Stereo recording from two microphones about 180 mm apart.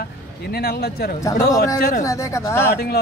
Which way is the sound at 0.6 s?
60° left (ahead or behind).